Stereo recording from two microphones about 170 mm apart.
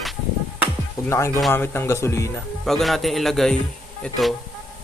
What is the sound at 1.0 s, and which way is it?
Speech, 15° left (ahead or behind).